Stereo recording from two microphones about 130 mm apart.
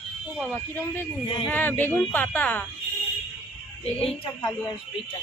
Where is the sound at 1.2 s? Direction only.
35° left (ahead or behind).